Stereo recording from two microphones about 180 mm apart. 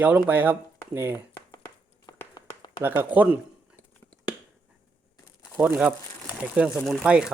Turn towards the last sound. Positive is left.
turn(degrees=-5)  # may be behind; listen again after turning